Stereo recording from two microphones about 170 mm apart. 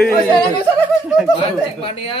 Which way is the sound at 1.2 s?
25° left (ahead or behind).